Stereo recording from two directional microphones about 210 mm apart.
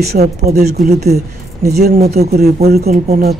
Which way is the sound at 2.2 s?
45° right (ahead or behind).